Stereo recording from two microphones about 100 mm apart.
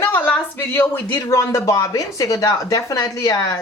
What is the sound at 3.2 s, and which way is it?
Speech, 45° left (ahead or behind).